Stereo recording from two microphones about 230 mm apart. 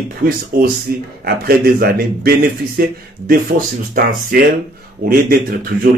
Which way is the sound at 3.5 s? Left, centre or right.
Right.